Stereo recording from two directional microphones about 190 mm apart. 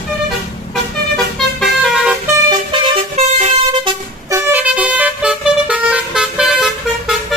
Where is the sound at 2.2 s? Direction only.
20° right (ahead or behind).